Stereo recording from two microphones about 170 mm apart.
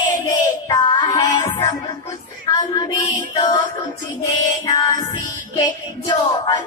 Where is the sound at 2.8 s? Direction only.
25° left (ahead or behind).